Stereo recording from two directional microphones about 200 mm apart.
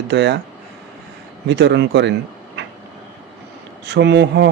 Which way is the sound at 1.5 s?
60° right (ahead or behind).